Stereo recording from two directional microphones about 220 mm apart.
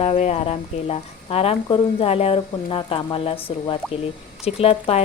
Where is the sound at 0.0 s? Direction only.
30° left (ahead or behind).